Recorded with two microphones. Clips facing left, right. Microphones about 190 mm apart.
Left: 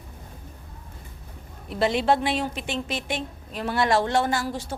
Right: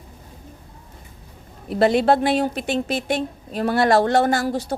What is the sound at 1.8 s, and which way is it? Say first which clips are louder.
A woman's voice: right 5 dB; 40° right (ahead or behind).